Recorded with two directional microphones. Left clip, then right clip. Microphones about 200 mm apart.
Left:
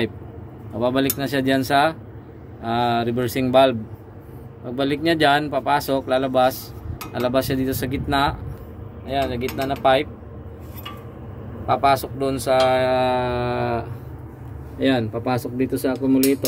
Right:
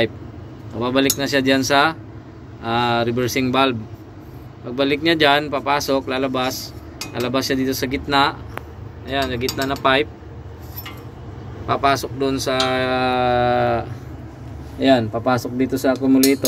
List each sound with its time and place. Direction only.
0.7 s speech: 10° left (ahead or behind)
11.6 s speech: 5° left (ahead or behind)